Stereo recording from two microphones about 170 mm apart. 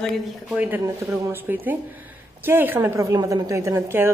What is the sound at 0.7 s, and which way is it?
A woman's voice, 15° right (ahead or behind).